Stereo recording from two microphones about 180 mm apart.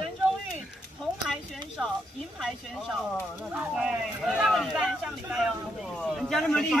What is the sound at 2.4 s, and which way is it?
Speech, centre (ahead or behind).